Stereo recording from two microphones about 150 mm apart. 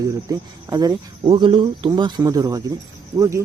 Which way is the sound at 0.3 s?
25° right (ahead or behind).